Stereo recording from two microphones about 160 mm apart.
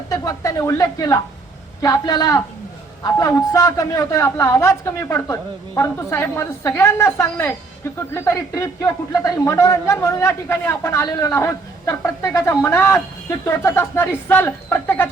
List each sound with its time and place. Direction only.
0.1 s a woman's voice: 20° left (ahead or behind)